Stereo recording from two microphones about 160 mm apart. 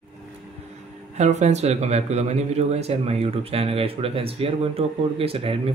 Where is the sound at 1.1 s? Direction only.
45° right (ahead or behind).